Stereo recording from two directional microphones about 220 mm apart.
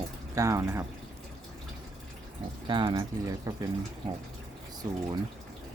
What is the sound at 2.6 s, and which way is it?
Speech, 20° right (ahead or behind).